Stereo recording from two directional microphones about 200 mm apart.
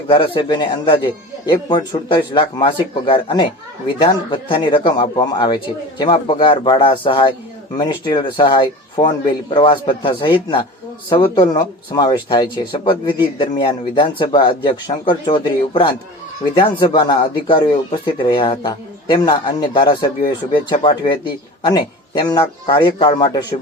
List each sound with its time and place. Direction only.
0.1 s speech: 25° left (ahead or behind)